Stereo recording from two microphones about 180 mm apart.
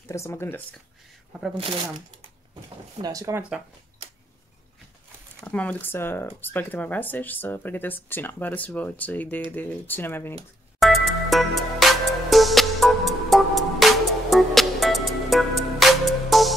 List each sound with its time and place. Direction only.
0.1 s speech: 15° left (ahead or behind)
3.0 s speech: 20° right (ahead or behind)
5.4 s speech: 10° left (ahead or behind)
10.8 s music: centre (ahead or behind)